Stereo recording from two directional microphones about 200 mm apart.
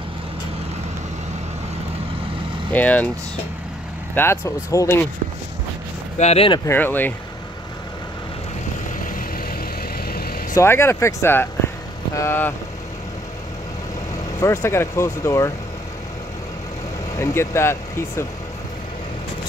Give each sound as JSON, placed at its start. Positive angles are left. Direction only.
{"t": 2.7, "sound": "speech", "side_deg": 10}
{"t": 4.1, "sound": "speech", "side_deg": 10}
{"t": 6.1, "sound": "speech", "side_deg": 30}
{"t": 6.6, "sound": "speech", "side_deg": 10}
{"t": 9.0, "sound": "vehicle", "side_deg": 45}
{"t": 10.5, "sound": "speech", "side_deg": 15}
{"t": 14.4, "sound": "speech", "side_deg": 15}
{"t": 17.2, "sound": "speech", "side_deg": 15}